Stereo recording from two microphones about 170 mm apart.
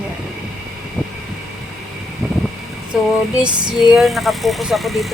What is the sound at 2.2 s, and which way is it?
Vehicle, 5° right (ahead or behind).